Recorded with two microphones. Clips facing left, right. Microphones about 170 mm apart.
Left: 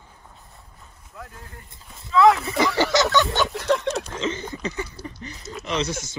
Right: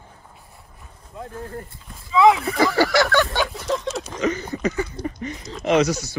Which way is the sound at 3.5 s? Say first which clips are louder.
Left 3 dB; 70° left (ahead or behind).